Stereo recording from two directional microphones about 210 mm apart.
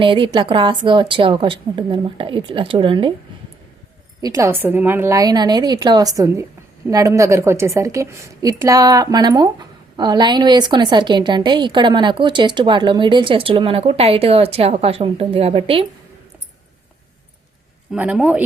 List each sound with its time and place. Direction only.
0.0 s a woman's voice: 25° right (ahead or behind)
4.2 s a woman's voice: 15° right (ahead or behind)
17.9 s a woman's voice: 5° right (ahead or behind)